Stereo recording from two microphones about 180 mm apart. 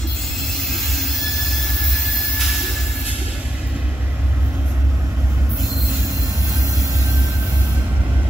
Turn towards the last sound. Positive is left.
turn(degrees=-20)  # may be behind; listen again after turning